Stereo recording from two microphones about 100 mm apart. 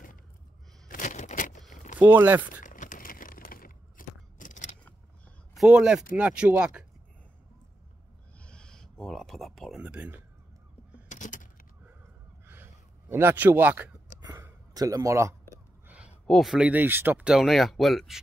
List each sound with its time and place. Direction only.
2.0 s a man's voice: 20° right (ahead or behind)
5.6 s speech: 10° right (ahead or behind)
8.4 s a sound: 10° left (ahead or behind); by 10.2 s 15° right (ahead or behind)
13.1 s a man's voice: 20° right (ahead or behind)
14.7 s speech: 35° right (ahead or behind)
16.3 s speech: centre (ahead or behind)
16.5 s a man's voice: 15° right (ahead or behind)
17.2 s speech: 5° right (ahead or behind)